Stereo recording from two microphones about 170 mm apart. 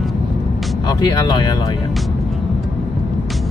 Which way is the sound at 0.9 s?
25° left (ahead or behind).